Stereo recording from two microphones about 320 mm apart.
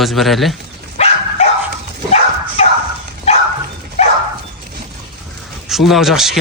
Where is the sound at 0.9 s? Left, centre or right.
Centre.